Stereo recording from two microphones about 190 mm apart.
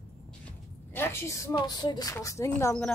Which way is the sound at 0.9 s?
15° left (ahead or behind).